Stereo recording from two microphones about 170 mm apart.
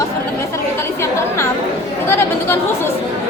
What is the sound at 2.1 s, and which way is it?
Speech, 15° left (ahead or behind).